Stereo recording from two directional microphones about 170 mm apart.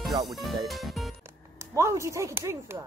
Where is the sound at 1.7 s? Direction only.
15° right (ahead or behind).